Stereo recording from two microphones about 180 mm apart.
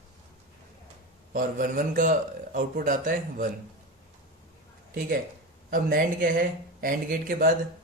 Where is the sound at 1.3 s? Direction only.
50° right (ahead or behind).